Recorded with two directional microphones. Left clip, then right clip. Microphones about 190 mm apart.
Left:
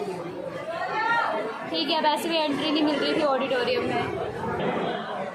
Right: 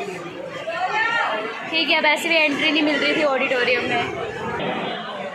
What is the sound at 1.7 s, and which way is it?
Speech, 30° right (ahead or behind).